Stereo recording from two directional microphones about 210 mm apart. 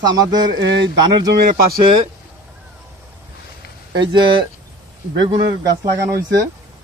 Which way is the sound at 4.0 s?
20° right (ahead or behind).